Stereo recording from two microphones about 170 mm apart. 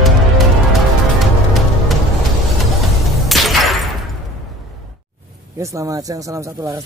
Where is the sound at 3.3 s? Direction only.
Centre (ahead or behind).